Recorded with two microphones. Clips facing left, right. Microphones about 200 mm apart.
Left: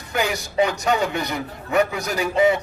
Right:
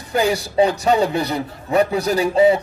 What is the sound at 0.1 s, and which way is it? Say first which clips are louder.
A man's voice: right 6 dB; 35° right (ahead or behind).